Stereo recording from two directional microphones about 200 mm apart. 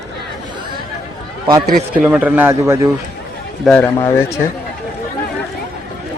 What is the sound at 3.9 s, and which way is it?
Speech, 15° left (ahead or behind).